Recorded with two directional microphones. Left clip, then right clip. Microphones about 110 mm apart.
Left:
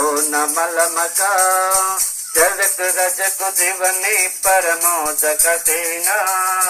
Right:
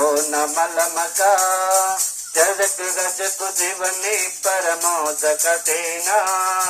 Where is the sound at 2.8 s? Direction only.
30° right (ahead or behind).